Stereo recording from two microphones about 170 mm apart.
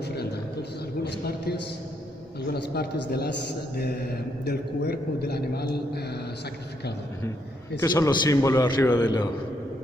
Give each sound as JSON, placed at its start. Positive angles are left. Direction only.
{"t": 0.0, "sound": "a sound", "side_deg": 75}
{"t": 2.5, "sound": "a man's voice", "side_deg": 65}
{"t": 4.5, "sound": "a man's voice", "side_deg": 70}
{"t": 7.8, "sound": "a man's voice", "side_deg": 20}